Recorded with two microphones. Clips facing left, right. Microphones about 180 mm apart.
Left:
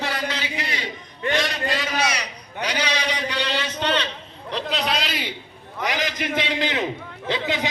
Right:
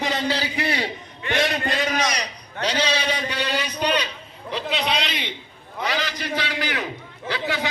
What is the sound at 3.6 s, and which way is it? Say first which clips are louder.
Speech: even; 15° right (ahead or behind).